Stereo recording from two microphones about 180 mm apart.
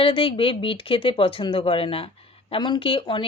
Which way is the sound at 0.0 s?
30° left (ahead or behind).